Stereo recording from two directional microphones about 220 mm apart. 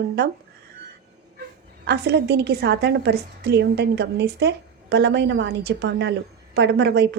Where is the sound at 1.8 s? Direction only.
50° right (ahead or behind).